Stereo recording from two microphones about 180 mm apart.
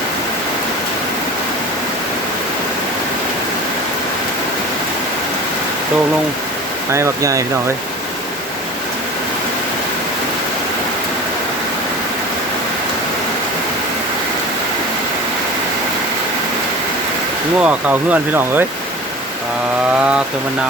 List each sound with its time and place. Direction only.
6.9 s speech: 15° right (ahead or behind)
17.6 s speech: 5° right (ahead or behind)